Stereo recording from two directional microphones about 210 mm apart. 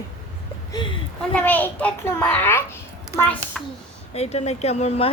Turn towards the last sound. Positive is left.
turn(degrees=30)  # may be behind; listen again after turning